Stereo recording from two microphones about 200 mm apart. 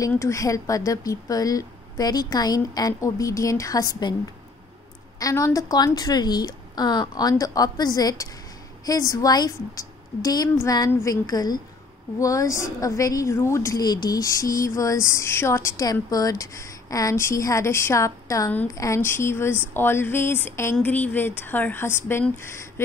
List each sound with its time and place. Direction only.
0.0 s a woman's voice: 15° left (ahead or behind)
5.2 s a woman's voice: 15° left (ahead or behind)